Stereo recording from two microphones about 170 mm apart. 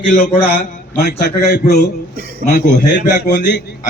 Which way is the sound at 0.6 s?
70° left (ahead or behind).